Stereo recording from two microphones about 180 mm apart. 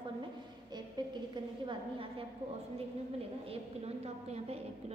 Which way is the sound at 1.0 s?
25° right (ahead or behind).